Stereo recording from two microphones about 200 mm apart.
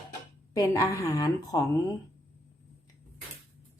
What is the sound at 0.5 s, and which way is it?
Speech, 15° left (ahead or behind).